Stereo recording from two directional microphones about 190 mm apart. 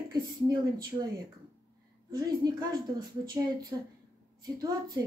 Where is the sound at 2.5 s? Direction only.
20° right (ahead or behind).